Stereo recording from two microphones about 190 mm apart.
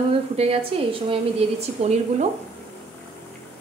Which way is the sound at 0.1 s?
30° right (ahead or behind).